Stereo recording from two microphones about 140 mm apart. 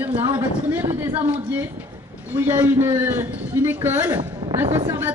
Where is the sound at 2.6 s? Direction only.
15° right (ahead or behind).